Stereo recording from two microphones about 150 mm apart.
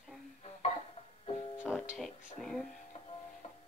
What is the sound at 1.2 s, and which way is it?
Music, 40° left (ahead or behind).